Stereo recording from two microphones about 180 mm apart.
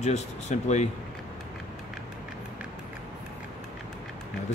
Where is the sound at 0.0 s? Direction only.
40° left (ahead or behind).